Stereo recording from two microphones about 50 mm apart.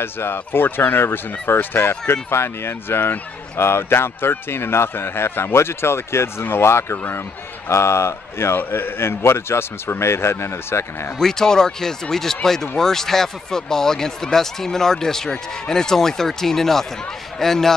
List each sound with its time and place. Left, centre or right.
0.0 s a man's voice: left
11.1 s speech: centre